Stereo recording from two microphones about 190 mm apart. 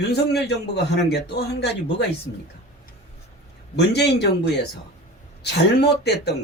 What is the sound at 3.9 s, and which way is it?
Speech, 60° left (ahead or behind).